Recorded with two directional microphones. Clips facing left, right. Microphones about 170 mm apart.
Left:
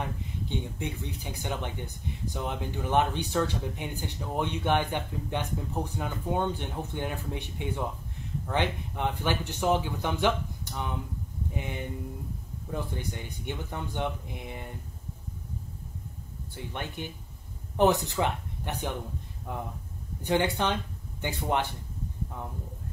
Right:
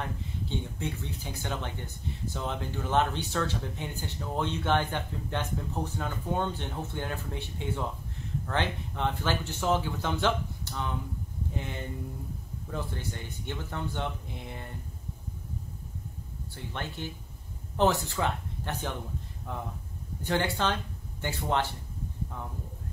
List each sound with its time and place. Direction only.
0.5 s speech: 15° left (ahead or behind)
16.5 s speech: 15° left (ahead or behind)